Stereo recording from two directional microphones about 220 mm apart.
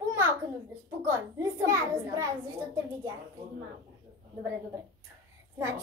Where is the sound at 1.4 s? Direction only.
15° right (ahead or behind).